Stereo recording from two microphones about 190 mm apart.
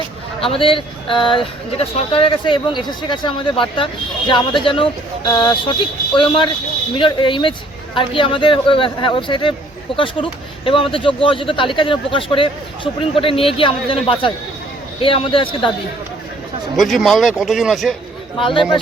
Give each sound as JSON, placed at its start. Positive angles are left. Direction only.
{"t": 0.4, "sound": "speech", "side_deg": 30}
{"t": 16.7, "sound": "speech", "side_deg": 0}